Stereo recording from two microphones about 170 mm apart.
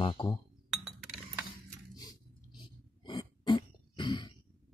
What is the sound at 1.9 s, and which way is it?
Throat clearing, 25° left (ahead or behind).